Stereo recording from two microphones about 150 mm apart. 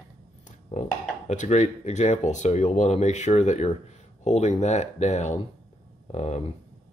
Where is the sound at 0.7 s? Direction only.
55° left (ahead or behind).